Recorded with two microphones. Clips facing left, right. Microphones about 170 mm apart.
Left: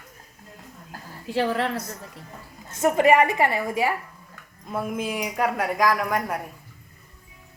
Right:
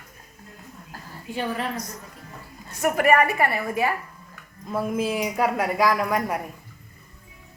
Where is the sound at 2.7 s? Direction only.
25° left (ahead or behind).